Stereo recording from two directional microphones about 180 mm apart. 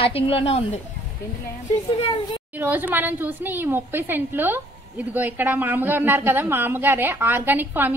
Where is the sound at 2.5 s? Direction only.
10° right (ahead or behind).